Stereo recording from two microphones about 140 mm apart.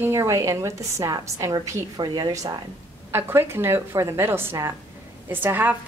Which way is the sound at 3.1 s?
15° right (ahead or behind).